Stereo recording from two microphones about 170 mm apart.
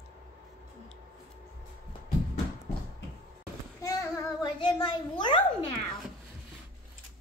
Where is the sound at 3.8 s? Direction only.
20° left (ahead or behind).